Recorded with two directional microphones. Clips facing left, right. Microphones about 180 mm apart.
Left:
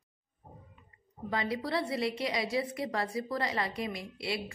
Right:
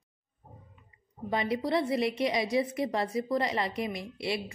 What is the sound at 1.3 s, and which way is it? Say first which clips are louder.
A woman's voice: right 4 dB; 20° right (ahead or behind).